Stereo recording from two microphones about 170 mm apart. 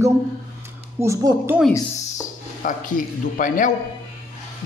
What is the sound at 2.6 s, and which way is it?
A man's voice, 50° left (ahead or behind).